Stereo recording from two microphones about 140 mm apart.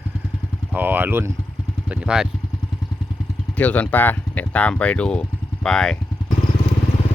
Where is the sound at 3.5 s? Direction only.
10° left (ahead or behind).